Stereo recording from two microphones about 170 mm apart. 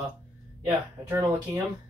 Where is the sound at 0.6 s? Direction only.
20° right (ahead or behind).